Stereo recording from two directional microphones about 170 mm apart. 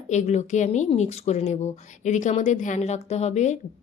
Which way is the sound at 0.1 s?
45° left (ahead or behind).